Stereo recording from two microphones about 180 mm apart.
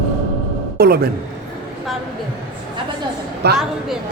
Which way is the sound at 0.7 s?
60° right (ahead or behind).